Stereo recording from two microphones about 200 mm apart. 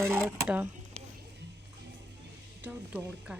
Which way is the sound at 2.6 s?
10° right (ahead or behind).